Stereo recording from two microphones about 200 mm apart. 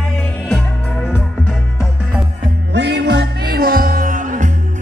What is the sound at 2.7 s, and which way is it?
Music, 60° right (ahead or behind).